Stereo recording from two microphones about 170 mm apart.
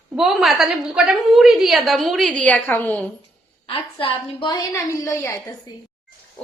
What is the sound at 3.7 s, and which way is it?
A woman's voice, 35° left (ahead or behind).